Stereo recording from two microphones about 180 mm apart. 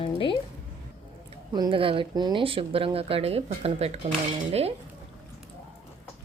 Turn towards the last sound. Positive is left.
turn(degrees=-35)  # may be behind; listen again after turning